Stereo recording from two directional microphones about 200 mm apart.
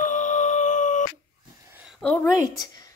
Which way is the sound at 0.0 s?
40° left (ahead or behind).